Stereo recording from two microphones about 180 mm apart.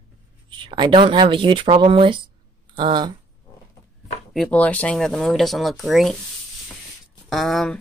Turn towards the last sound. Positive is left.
turn(degrees=0)  # may be behind; listen again after turning